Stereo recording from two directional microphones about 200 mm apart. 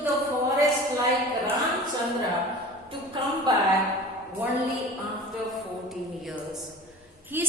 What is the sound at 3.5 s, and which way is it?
Speech, 20° right (ahead or behind).